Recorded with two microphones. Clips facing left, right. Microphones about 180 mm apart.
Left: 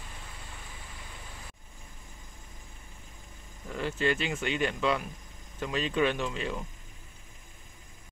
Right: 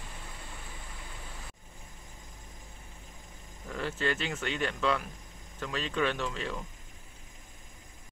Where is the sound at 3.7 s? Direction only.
10° left (ahead or behind).